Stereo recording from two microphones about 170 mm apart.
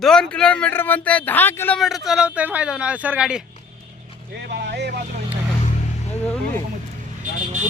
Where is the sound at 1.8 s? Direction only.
Centre (ahead or behind).